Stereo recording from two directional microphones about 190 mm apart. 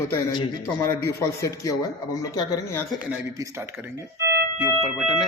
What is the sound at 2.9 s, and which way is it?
Speech, 10° right (ahead or behind).